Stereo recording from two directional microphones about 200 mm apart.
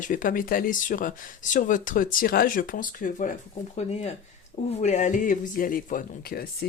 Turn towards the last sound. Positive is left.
turn(degrees=50)  # may be behind; listen again after turning